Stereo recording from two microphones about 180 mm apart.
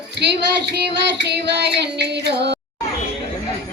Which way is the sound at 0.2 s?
70° right (ahead or behind).